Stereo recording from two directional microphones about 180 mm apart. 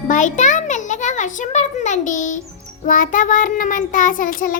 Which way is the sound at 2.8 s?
50° left (ahead or behind).